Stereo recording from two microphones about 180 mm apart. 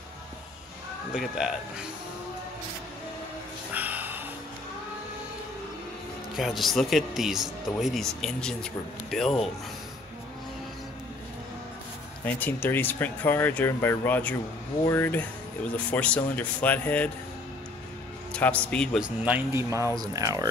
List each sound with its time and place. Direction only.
1.1 s speech: 5° right (ahead or behind)
3.7 s a sound: 10° right (ahead or behind)
6.3 s speech: centre (ahead or behind)
12.3 s speech: 10° left (ahead or behind)
18.3 s speech: 5° left (ahead or behind)
19.0 s speech: 10° right (ahead or behind)